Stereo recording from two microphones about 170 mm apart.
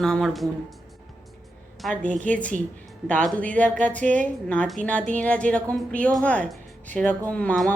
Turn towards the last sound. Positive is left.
turn(degrees=5)  # may be behind; listen again after turning